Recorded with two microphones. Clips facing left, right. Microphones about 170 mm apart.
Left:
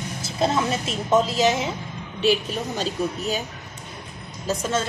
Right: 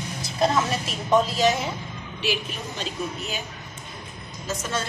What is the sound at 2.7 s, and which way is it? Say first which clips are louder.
Speech: left 4 dB; 40° left (ahead or behind).